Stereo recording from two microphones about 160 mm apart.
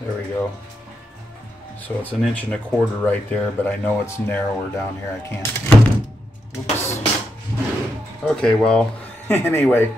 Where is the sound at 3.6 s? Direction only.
10° left (ahead or behind).